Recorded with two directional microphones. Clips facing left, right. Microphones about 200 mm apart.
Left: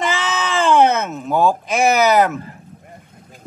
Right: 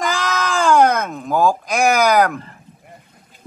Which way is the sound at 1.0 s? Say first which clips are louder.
Left 1 dB; 5° left (ahead or behind).